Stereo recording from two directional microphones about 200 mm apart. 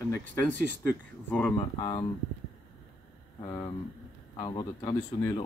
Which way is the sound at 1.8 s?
20° left (ahead or behind).